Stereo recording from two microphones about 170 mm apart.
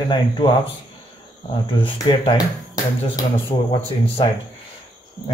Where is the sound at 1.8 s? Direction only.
30° left (ahead or behind).